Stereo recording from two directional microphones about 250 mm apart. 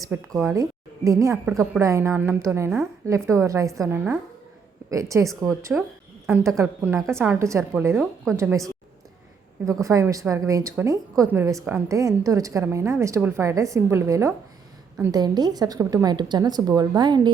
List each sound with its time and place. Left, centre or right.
0.0 s a woman's voice: centre
9.8 s a woman's voice: centre